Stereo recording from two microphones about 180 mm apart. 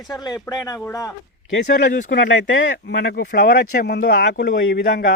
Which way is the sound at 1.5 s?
65° left (ahead or behind).